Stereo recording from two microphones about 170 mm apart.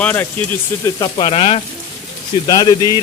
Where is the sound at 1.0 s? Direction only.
30° left (ahead or behind).